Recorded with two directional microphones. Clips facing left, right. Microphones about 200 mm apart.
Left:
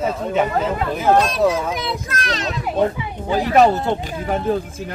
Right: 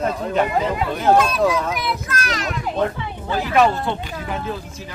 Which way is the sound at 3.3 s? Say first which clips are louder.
Left 3 dB; 40° left (ahead or behind).